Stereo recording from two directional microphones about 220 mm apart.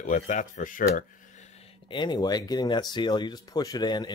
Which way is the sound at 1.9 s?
20° left (ahead or behind).